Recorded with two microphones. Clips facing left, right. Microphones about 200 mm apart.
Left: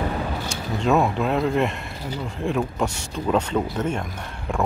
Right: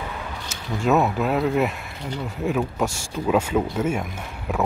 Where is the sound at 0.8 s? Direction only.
5° right (ahead or behind).